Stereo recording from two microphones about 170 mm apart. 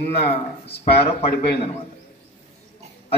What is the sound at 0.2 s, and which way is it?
Speech, 35° left (ahead or behind).